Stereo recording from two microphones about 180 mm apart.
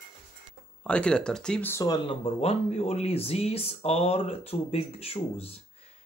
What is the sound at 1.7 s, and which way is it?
Speech, 20° left (ahead or behind).